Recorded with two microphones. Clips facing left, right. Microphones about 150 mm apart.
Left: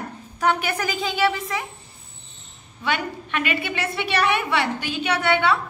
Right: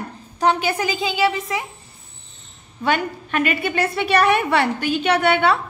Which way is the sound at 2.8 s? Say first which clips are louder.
Right 5 dB; 40° right (ahead or behind).